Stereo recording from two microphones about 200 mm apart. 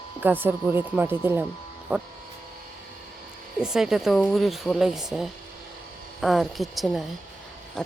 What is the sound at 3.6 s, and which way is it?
Speech, 5° right (ahead or behind).